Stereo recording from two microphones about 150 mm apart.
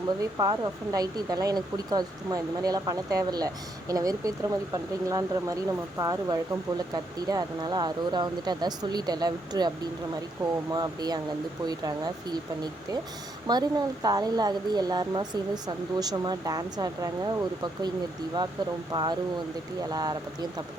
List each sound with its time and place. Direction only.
0.2 s speech: 25° right (ahead or behind)